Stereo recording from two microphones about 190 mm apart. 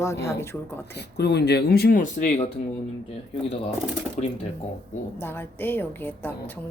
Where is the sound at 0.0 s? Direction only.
15° left (ahead or behind).